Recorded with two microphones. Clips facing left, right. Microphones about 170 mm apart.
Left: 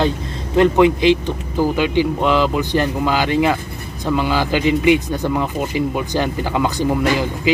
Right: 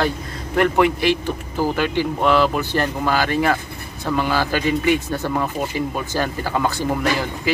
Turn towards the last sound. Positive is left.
turn(degrees=15)  # may be behind; listen again after turning